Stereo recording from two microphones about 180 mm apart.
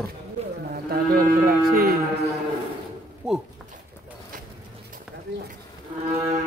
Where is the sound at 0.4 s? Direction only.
35° right (ahead or behind).